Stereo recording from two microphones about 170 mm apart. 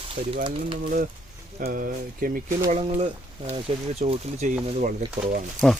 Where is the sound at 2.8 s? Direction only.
40° right (ahead or behind).